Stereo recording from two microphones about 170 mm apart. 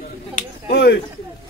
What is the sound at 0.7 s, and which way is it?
Speech, 80° left.